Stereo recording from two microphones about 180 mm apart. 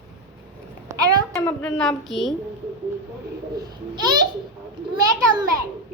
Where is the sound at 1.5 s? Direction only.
5° left (ahead or behind).